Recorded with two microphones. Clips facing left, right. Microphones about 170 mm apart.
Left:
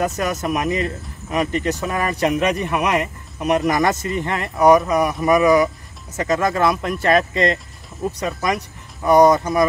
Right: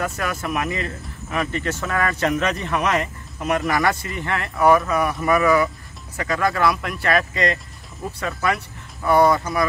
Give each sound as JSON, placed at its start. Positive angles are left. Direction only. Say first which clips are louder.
{"t": 0.2, "sound": "speech", "louder": "left 4 dB", "side_deg": 20}